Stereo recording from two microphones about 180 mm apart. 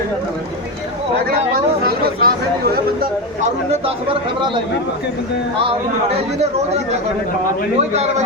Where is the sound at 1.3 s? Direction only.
55° right (ahead or behind).